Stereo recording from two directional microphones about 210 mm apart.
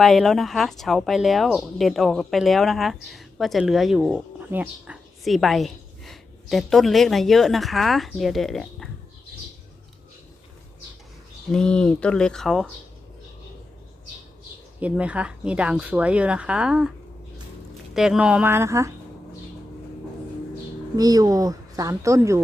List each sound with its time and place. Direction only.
0.0 s speech: centre (ahead or behind)
11.5 s speech: 5° left (ahead or behind)
14.8 s speech: 5° right (ahead or behind)
17.9 s a woman's voice: centre (ahead or behind)
20.9 s a woman's voice: 15° right (ahead or behind)